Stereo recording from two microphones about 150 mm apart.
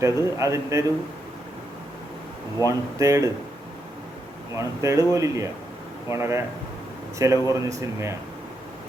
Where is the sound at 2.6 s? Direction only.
20° right (ahead or behind).